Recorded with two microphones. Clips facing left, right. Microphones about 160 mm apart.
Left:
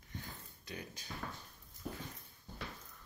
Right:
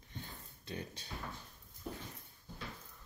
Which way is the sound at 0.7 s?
30° right (ahead or behind).